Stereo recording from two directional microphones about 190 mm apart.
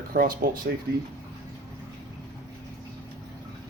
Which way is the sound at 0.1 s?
50° right (ahead or behind).